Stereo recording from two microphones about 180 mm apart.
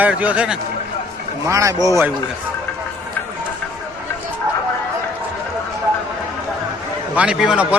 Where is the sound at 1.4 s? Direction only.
20° right (ahead or behind).